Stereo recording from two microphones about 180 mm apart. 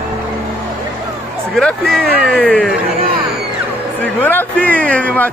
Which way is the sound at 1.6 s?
5° left (ahead or behind).